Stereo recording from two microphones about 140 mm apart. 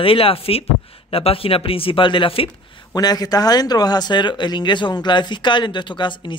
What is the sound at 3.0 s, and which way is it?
A man's voice, 30° left (ahead or behind).